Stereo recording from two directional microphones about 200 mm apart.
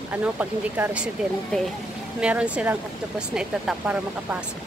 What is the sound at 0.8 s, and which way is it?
Speech, 5° right (ahead or behind).